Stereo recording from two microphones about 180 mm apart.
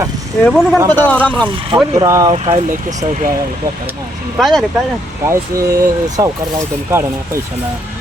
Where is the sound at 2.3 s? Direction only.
30° right (ahead or behind).